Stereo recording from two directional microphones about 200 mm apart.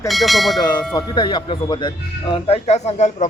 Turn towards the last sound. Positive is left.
turn(degrees=35)  # may be behind; listen again after turning